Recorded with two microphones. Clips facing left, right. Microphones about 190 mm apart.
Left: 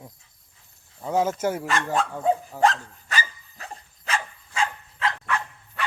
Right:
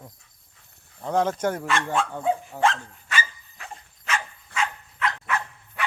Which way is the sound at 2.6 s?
40° left (ahead or behind).